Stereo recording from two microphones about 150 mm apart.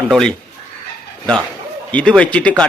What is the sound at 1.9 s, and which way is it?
Speech, 10° left (ahead or behind).